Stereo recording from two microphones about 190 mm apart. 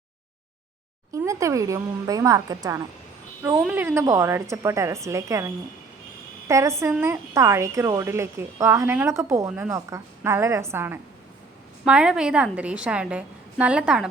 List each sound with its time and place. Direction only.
1.1 s speech: 15° right (ahead or behind)
6.5 s a woman's voice: 15° right (ahead or behind)